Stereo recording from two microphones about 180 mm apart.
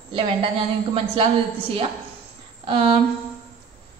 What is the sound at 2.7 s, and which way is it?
Speech, 30° right (ahead or behind).